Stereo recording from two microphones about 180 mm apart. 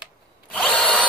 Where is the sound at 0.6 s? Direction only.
5° left (ahead or behind).